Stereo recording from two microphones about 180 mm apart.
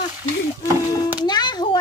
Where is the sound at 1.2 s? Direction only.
25° left (ahead or behind).